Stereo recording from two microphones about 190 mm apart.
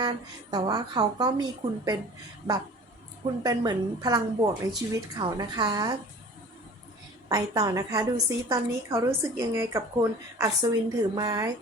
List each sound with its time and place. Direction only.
0.0 s a woman's voice: 20° right (ahead or behind)
3.4 s a woman's voice: 20° right (ahead or behind)
7.3 s a woman's voice: 20° right (ahead or behind)